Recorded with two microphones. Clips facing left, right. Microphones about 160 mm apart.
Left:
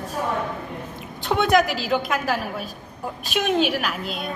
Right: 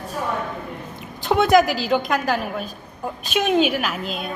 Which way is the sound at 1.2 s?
Centre (ahead or behind).